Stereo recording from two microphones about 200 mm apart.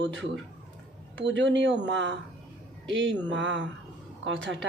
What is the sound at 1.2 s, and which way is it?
A woman's voice, 65° right (ahead or behind).